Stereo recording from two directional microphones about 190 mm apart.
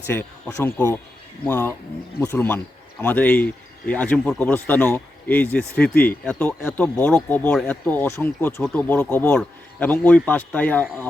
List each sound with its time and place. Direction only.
0.1 s speech: 10° left (ahead or behind)